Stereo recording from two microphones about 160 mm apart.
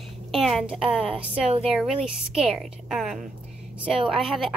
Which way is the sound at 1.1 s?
40° right (ahead or behind).